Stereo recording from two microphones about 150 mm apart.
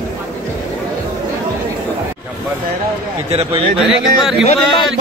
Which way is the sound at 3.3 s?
40° right (ahead or behind).